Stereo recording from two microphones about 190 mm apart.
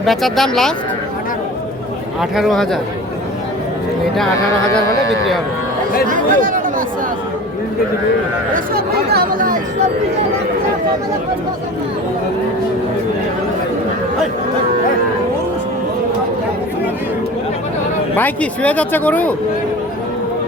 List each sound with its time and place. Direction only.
0.0 s speech: centre (ahead or behind)
2.3 s speech: centre (ahead or behind)
6.1 s speech: 45° right (ahead or behind)
8.5 s chatter: 50° right (ahead or behind)
18.2 s speech: 5° left (ahead or behind)